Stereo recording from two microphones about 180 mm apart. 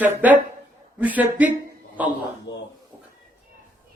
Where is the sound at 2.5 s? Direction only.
80° left.